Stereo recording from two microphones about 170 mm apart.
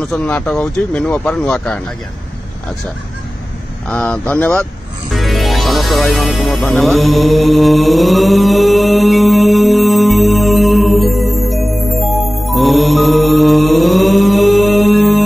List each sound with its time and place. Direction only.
0.0 s speech: 5° left (ahead or behind)
3.9 s speech: 5° left (ahead or behind)
5.1 s music: centre (ahead or behind)